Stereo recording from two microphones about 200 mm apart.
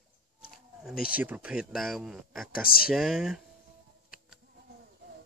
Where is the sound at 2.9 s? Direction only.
Centre (ahead or behind).